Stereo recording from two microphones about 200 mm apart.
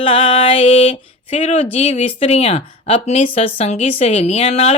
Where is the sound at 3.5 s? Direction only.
35° left (ahead or behind).